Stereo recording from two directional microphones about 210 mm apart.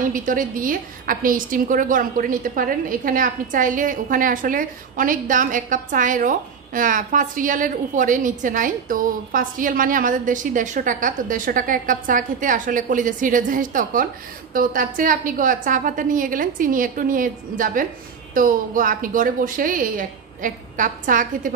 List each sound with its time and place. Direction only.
0.0 s a woman's voice: 40° right (ahead or behind)